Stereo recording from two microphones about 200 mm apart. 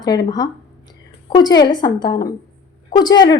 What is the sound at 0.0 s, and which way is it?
A woman's voice, 20° left (ahead or behind).